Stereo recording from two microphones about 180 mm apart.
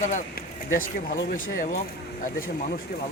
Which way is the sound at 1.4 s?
50° left (ahead or behind).